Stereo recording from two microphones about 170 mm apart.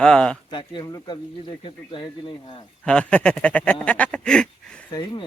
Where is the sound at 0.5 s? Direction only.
25° left (ahead or behind).